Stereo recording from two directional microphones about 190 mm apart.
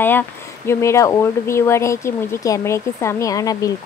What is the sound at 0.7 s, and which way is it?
Speech, 15° left (ahead or behind).